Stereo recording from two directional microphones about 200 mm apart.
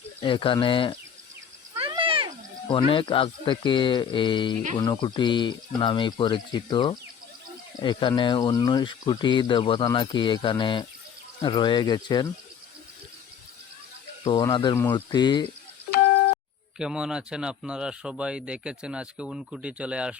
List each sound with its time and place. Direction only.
0.2 s speech: 25° left (ahead or behind)
1.8 s a sound: 25° right (ahead or behind)
2.6 s speech: 25° left (ahead or behind)
14.3 s speech: 20° left (ahead or behind)
16.7 s speech: 5° right (ahead or behind)